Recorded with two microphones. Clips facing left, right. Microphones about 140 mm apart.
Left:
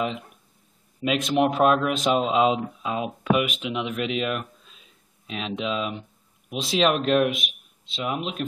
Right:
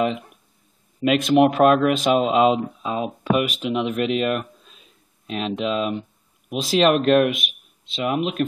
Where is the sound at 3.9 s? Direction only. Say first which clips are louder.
Right 5 dB; 45° right (ahead or behind).